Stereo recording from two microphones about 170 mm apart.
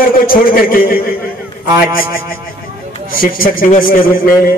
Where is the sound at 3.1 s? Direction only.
55° left (ahead or behind).